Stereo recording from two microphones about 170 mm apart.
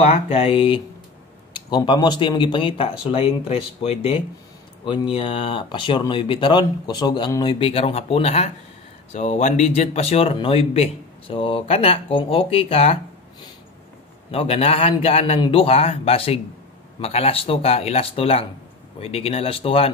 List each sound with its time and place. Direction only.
0.0 s speech: 35° left (ahead or behind)